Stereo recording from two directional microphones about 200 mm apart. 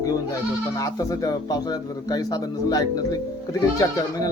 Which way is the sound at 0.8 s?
15° left (ahead or behind).